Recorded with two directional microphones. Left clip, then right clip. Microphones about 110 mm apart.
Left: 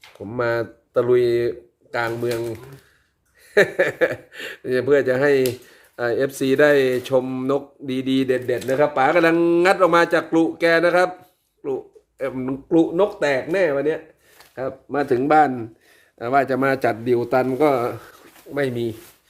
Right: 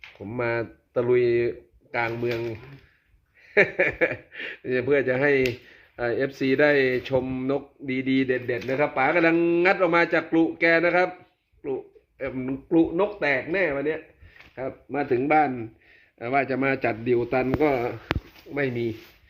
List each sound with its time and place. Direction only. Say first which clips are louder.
0.2 s speech: left 5 dB; 15° left (ahead or behind)
3.5 s speech: left 3 dB; 20° left (ahead or behind)
12.2 s a man's voice: left 5 dB; 30° left (ahead or behind)
12.6 s a man's voice: left 4 dB; 45° left (ahead or behind); by 18.9 s 25° left (ahead or behind)